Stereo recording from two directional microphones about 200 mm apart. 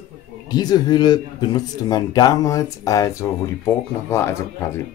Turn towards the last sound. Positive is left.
turn(degrees=15)  # may be behind; listen again after turning